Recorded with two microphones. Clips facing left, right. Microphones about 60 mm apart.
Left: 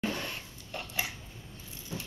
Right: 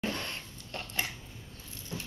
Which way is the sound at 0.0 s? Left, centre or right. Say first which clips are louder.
Left 1 dB; centre.